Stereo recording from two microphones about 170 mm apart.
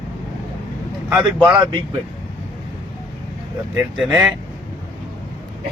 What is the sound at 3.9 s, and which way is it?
Speech, centre (ahead or behind).